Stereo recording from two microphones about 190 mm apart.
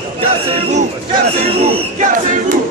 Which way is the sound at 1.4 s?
35° right (ahead or behind).